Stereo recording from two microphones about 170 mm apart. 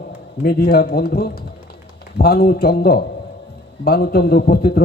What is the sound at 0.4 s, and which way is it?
A man's voice, 70° left (ahead or behind).